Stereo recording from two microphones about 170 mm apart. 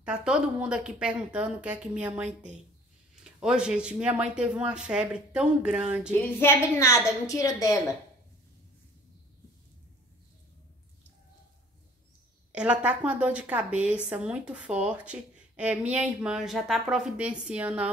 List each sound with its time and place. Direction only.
0.0 s a woman's voice: 5° right (ahead or behind)
6.4 s a woman's voice: 15° left (ahead or behind)
12.5 s a woman's voice: 5° right (ahead or behind)